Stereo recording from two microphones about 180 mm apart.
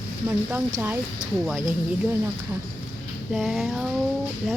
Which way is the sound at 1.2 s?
45° right (ahead or behind).